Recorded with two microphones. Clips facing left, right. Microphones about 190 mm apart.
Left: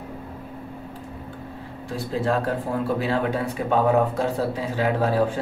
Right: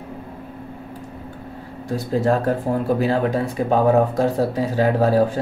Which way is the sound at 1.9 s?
45° right (ahead or behind).